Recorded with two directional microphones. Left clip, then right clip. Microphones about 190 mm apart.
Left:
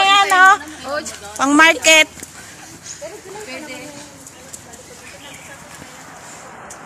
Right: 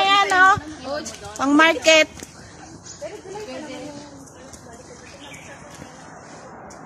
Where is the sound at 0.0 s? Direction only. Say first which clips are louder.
Left 4 dB; 25° left (ahead or behind).